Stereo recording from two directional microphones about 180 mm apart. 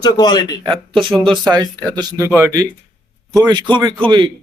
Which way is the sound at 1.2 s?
25° right (ahead or behind).